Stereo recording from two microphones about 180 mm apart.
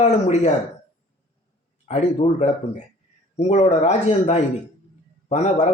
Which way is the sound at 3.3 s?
35° left (ahead or behind).